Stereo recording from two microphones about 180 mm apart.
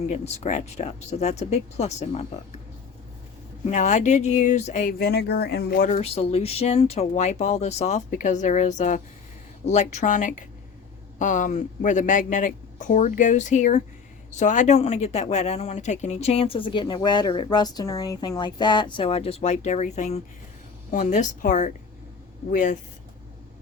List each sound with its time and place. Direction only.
0.1 s speech: 40° left (ahead or behind)
3.7 s speech: 40° left (ahead or behind); by 5.9 s 55° left (ahead or behind)
5.9 s speech: 35° left (ahead or behind)